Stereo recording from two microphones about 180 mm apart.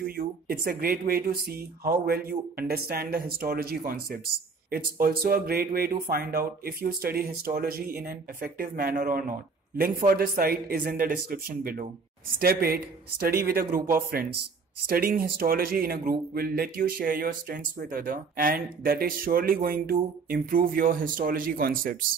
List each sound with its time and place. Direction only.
0.0 s speech: 55° right (ahead or behind)